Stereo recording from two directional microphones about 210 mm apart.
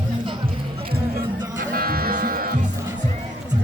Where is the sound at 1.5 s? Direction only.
45° right (ahead or behind).